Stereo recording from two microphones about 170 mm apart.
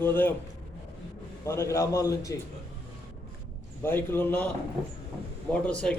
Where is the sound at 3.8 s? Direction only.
15° left (ahead or behind).